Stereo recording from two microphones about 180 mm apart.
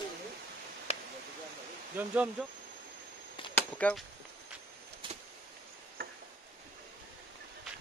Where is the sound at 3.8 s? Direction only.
5° left (ahead or behind).